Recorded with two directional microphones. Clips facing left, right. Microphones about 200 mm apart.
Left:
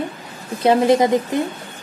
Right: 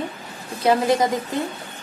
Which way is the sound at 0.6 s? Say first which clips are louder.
Left 4 dB; 25° left (ahead or behind).